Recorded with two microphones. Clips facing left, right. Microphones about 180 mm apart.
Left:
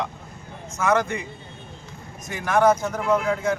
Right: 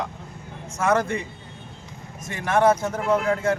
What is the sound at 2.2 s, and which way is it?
Speech, 25° right (ahead or behind).